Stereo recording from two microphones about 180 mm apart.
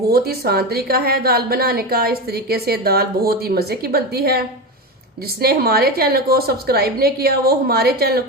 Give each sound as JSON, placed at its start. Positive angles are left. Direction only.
{"t": 0.1, "sound": "a woman's voice", "side_deg": -60}